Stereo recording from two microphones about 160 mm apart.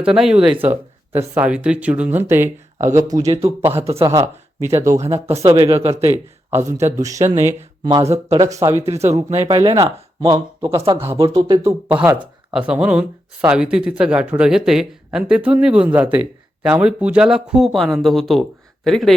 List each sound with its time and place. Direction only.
0.0 s speech: 5° right (ahead or behind); by 3.3 s 20° right (ahead or behind)
3.3 s speech: 40° right (ahead or behind)
4.6 s speech: 20° right (ahead or behind)
4.9 s speech: 40° right (ahead or behind)
5.3 s speech: 20° right (ahead or behind)
5.8 s speech: 40° right (ahead or behind)
6.5 s speech: 15° right (ahead or behind)
8.3 s speech: 20° right (ahead or behind)
9.0 s speech: 45° right (ahead or behind)
9.5 s speech: 30° right (ahead or behind)
11.3 s speech: 30° right (ahead or behind)
12.5 s speech: 5° right (ahead or behind)